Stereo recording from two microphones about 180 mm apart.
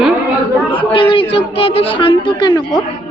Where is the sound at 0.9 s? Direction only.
30° left (ahead or behind).